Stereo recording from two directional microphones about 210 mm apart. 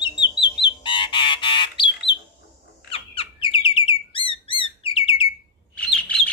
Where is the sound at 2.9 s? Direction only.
25° left (ahead or behind).